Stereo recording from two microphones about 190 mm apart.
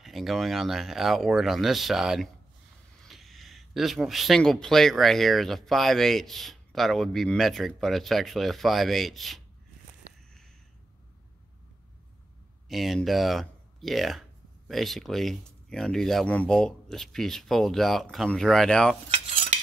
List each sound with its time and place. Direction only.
0.0 s speech: centre (ahead or behind)
12.6 s speech: centre (ahead or behind)
19.0 s cutlery: 35° right (ahead or behind)